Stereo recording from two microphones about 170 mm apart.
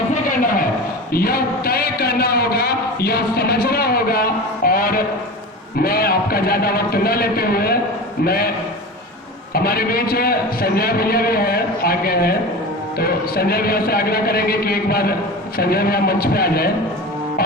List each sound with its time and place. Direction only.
0.1 s a sound: 55° left (ahead or behind)
5.8 s a man's voice: 60° left (ahead or behind)
9.6 s a man's voice: 60° left (ahead or behind)